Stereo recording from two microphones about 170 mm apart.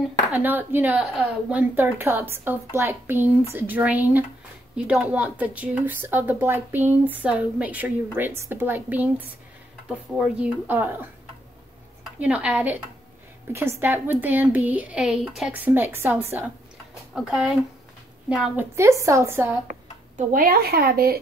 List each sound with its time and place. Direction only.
0.4 s speech: 10° right (ahead or behind)
12.2 s speech: 5° right (ahead or behind)
18.8 s speech: 20° right (ahead or behind)
19.7 s speech: 55° right (ahead or behind)